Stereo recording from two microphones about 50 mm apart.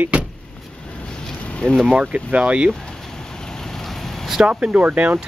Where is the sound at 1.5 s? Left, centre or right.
Left.